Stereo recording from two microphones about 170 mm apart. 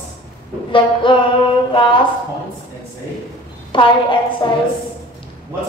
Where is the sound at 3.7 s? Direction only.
30° left (ahead or behind).